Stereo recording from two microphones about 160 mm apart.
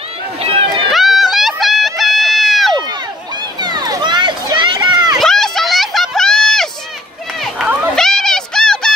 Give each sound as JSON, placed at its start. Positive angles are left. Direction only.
{"t": 0.4, "sound": "run", "side_deg": -35}
{"t": 0.8, "sound": "run", "side_deg": 0}
{"t": 3.6, "sound": "a sound", "side_deg": -25}
{"t": 5.1, "sound": "run", "side_deg": 0}